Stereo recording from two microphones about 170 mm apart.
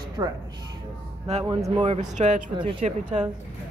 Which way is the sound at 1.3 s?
35° right (ahead or behind).